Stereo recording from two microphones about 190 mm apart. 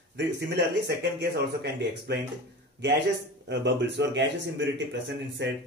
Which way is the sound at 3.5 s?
70° right (ahead or behind).